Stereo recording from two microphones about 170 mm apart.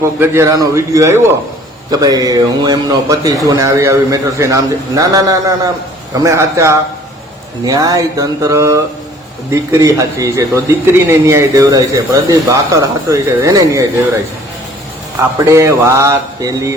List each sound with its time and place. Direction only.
0.0 s a man's voice: 15° right (ahead or behind)
15.4 s a man's voice: 15° right (ahead or behind)